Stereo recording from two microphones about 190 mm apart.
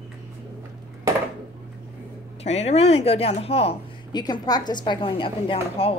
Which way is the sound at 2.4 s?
35° left (ahead or behind).